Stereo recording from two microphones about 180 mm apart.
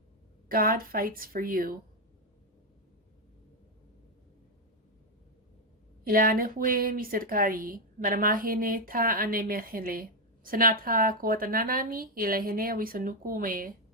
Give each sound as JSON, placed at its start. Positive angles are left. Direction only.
{"t": 0.4, "sound": "speech", "side_deg": -55}
{"t": 6.1, "sound": "speech", "side_deg": -55}